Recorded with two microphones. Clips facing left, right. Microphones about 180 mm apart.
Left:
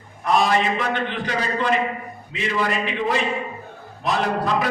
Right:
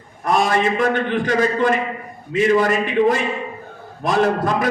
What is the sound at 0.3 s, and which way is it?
A man's voice, 50° right (ahead or behind).